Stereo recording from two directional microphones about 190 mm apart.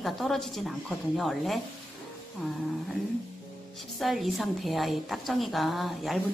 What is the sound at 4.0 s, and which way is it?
A woman's voice, centre (ahead or behind).